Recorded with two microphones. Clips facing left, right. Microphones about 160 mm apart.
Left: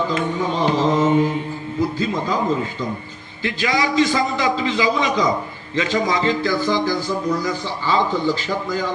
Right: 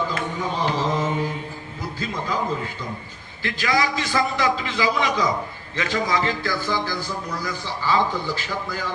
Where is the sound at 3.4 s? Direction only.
20° left (ahead or behind).